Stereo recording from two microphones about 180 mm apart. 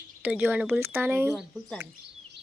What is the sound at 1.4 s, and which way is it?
Speech, centre (ahead or behind).